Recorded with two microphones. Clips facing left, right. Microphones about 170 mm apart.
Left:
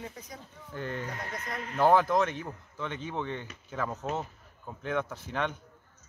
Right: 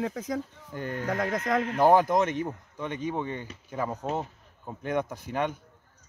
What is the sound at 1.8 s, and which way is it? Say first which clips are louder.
Speech: right 2 dB; 15° right (ahead or behind).